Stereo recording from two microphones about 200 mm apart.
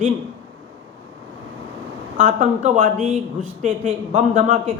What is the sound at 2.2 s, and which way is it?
Speech, 40° right (ahead or behind).